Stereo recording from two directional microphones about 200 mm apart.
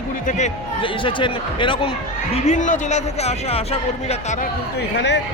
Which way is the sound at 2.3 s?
35° left (ahead or behind).